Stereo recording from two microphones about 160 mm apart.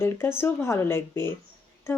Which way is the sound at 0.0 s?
15° left (ahead or behind).